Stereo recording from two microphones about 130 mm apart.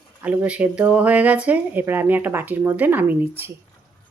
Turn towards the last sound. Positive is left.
turn(degrees=-15)  # may be behind; listen again after turning